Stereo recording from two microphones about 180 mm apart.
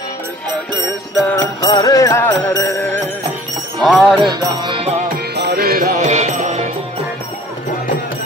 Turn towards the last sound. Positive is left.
turn(degrees=-40)  # may be behind; listen again after turning